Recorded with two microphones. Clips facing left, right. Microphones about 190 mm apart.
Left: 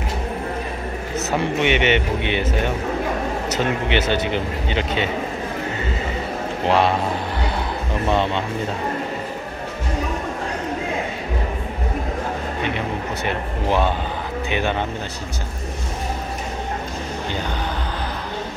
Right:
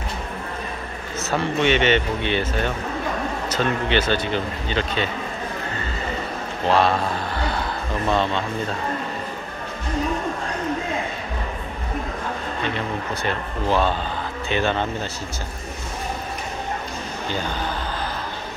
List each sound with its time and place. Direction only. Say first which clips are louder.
1.3 s speech: even; 15° left (ahead or behind)
6.7 s speech: even; 20° left (ahead or behind)
12.6 s speech: even; 15° left (ahead or behind)